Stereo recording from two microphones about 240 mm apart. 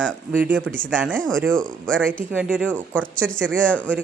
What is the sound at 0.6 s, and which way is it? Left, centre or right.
Speech, centre.